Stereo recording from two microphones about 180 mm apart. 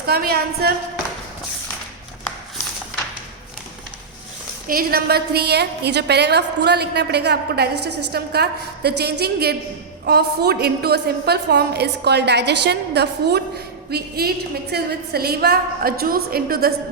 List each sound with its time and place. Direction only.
0.0 s a woman's voice: 60° right (ahead or behind)
4.7 s a woman's voice: 55° right (ahead or behind)